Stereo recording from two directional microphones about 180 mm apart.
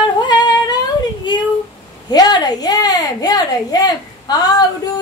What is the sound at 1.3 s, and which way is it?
A child's voice, 25° left (ahead or behind).